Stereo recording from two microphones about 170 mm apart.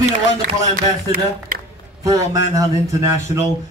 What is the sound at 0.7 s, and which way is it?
Speech, 55° right (ahead or behind).